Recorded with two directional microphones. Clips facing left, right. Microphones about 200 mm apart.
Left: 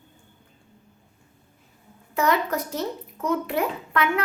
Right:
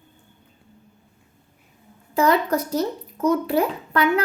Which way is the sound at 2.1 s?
35° right (ahead or behind).